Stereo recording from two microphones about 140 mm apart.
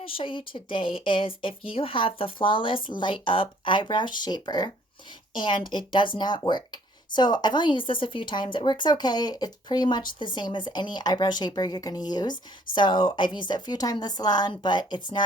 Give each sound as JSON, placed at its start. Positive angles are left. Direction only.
{"t": 0.0, "sound": "a woman's voice", "side_deg": 40}